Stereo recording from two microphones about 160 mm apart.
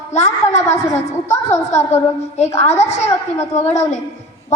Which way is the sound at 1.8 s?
45° left (ahead or behind).